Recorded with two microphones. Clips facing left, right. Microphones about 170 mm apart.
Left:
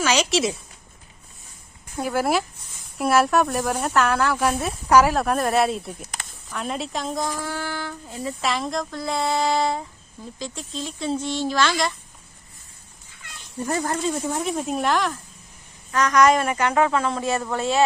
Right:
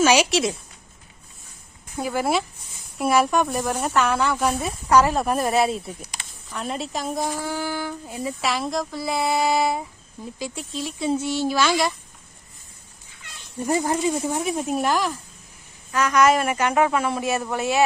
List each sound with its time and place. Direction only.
0.0 s a woman's voice: 10° right (ahead or behind)
0.3 s speech: centre (ahead or behind)
2.0 s speech: centre (ahead or behind)
7.3 s speech: 15° right (ahead or behind)
8.4 s speech: centre (ahead or behind)
13.6 s speech: 15° right (ahead or behind)
14.2 s a woman's voice: 5° right (ahead or behind)